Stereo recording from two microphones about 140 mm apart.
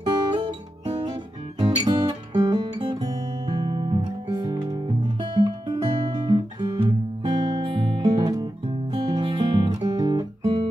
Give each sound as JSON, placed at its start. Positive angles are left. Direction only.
{"t": 0.0, "sound": "guitar", "side_deg": -30}
{"t": 1.6, "sound": "guitar", "side_deg": -30}